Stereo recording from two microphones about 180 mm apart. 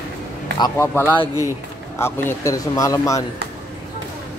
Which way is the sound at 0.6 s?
15° left (ahead or behind).